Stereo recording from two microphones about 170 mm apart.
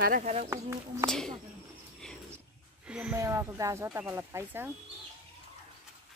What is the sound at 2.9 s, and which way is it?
Speech, 5° right (ahead or behind).